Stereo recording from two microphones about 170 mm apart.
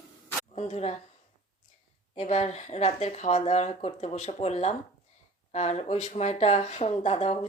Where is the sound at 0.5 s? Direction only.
40° left (ahead or behind).